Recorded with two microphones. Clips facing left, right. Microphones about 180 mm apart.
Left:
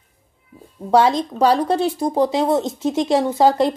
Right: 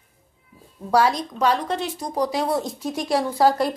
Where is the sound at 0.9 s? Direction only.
25° left (ahead or behind).